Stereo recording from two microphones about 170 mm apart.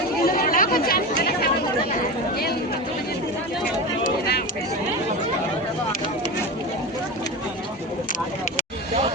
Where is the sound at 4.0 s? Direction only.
70° left (ahead or behind).